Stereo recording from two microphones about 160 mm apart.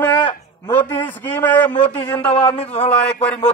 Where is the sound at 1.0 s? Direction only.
10° left (ahead or behind).